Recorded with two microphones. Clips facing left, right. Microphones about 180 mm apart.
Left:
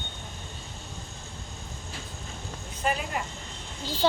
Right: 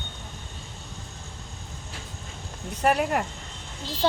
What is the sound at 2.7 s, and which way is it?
Speech, 70° right (ahead or behind).